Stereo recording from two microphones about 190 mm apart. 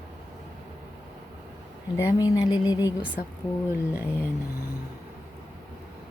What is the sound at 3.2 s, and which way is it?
Speech, 40° left (ahead or behind).